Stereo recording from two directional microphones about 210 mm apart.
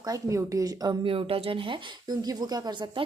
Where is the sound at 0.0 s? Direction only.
15° right (ahead or behind).